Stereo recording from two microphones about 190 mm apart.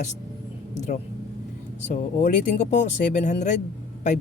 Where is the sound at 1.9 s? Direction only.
40° left (ahead or behind).